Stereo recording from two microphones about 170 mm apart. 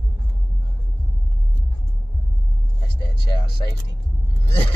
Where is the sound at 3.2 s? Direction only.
25° left (ahead or behind).